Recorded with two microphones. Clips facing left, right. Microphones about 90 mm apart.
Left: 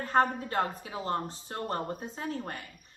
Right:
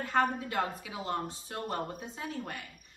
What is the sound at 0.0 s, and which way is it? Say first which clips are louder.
A woman's voice: left 3 dB; 40° left (ahead or behind).